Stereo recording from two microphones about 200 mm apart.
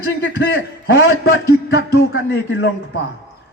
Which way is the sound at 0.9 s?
60° left (ahead or behind).